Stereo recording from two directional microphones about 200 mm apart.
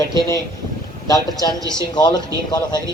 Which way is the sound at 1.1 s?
20° left (ahead or behind).